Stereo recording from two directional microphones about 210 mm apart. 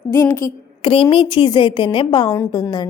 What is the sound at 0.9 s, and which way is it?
A woman's voice, 25° left (ahead or behind).